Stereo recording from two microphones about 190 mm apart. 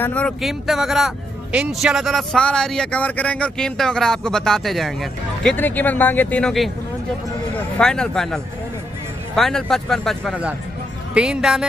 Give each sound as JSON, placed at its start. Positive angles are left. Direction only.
{"t": 0.0, "sound": "a man's voice", "side_deg": 5}